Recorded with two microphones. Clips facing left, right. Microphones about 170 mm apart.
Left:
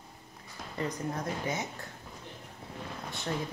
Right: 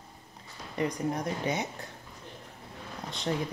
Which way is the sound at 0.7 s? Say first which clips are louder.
Right 4 dB; 15° right (ahead or behind).